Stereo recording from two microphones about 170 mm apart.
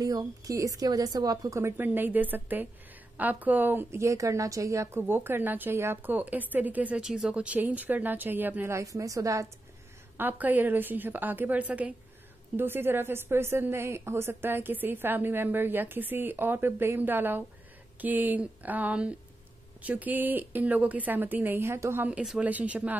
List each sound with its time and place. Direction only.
0.0 s a woman's voice: 20° right (ahead or behind)